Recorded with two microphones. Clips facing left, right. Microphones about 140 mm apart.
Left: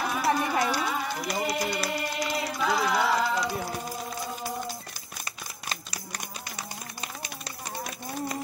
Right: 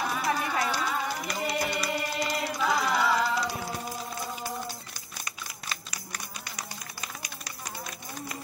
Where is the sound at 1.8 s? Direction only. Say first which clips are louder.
Even; centre (ahead or behind).